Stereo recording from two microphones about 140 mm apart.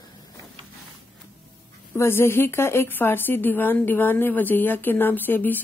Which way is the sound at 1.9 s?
15° left (ahead or behind).